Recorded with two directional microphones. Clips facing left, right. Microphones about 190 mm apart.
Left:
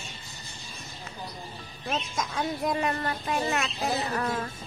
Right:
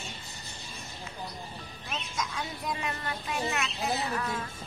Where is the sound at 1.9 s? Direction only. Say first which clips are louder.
Left 5 dB; 50° left (ahead or behind).